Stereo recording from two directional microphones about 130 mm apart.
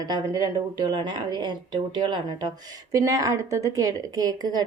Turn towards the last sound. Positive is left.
turn(degrees=-30)  # may be behind; listen again after turning